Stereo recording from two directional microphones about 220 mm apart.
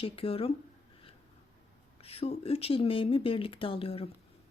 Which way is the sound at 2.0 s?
25° left (ahead or behind).